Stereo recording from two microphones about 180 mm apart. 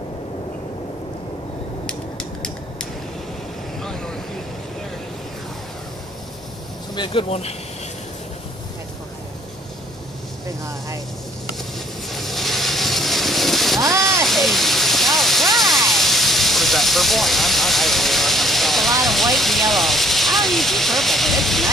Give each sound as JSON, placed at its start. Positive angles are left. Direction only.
{"t": 1.9, "sound": "a sound", "side_deg": 5}
{"t": 3.8, "sound": "vehicle", "side_deg": 5}
{"t": 7.0, "sound": "speech", "side_deg": 30}
{"t": 12.1, "sound": "ocean", "side_deg": 0}
{"t": 13.7, "sound": "a sound", "side_deg": -15}
{"t": 14.2, "sound": "waterfall", "side_deg": 0}